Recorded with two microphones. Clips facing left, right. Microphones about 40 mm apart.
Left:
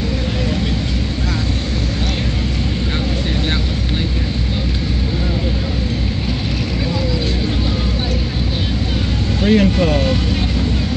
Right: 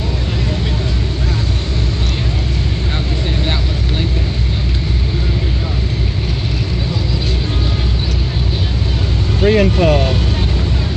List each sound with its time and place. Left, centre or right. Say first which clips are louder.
9.4 s speech: right 2 dB; right